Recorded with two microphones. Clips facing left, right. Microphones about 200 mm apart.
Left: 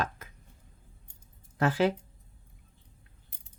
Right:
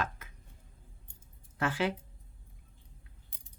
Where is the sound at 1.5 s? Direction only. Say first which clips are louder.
Left 6 dB; 40° left (ahead or behind).